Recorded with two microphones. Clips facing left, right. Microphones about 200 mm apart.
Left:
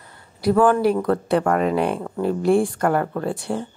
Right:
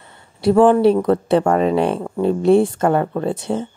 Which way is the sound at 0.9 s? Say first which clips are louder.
Right 4 dB; 20° right (ahead or behind).